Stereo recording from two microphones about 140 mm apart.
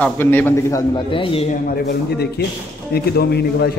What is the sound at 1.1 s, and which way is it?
Speech, 40° left (ahead or behind).